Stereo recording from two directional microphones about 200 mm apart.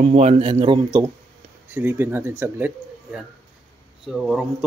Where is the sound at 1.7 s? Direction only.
10° right (ahead or behind).